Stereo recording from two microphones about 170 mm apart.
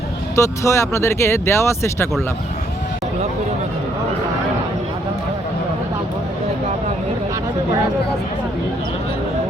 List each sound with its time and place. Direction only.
0.3 s speech: 15° left (ahead or behind)